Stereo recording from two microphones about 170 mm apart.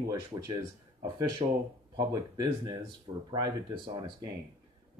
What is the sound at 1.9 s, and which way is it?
Speech, 25° right (ahead or behind).